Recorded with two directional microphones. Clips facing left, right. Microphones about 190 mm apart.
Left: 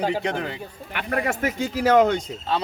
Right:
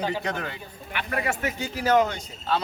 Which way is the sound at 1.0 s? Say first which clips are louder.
Left 3 dB; 45° left (ahead or behind).